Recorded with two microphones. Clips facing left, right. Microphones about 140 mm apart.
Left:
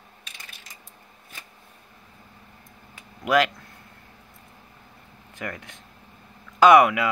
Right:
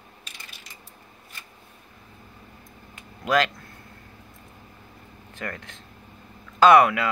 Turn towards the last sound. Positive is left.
turn(degrees=15)  # may be behind; listen again after turning